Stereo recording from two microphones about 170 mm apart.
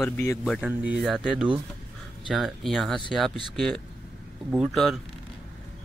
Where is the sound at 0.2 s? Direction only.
15° left (ahead or behind).